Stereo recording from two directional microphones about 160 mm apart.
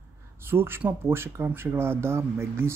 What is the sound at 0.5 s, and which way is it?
Speech, 15° right (ahead or behind).